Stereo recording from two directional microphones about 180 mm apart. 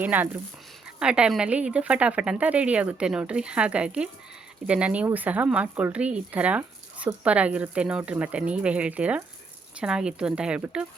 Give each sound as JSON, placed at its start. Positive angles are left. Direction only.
{"t": 0.0, "sound": "speech", "side_deg": -10}